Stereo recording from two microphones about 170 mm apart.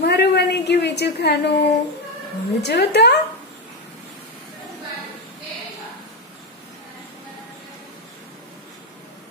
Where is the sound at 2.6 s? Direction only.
75° left (ahead or behind).